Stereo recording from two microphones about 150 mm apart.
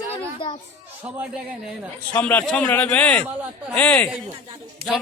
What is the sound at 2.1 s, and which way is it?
A man's voice, 10° left (ahead or behind).